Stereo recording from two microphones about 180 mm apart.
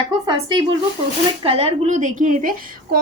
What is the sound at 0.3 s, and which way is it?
A woman's voice, 25° right (ahead or behind).